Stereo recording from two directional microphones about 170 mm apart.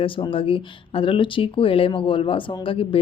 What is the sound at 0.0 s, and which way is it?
Speech, 30° left (ahead or behind).